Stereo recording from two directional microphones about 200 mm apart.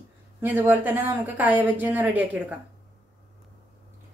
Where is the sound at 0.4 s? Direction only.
10° right (ahead or behind).